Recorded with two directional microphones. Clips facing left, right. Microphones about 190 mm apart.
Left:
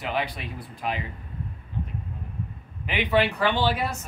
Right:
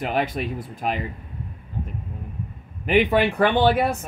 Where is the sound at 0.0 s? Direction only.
45° right (ahead or behind).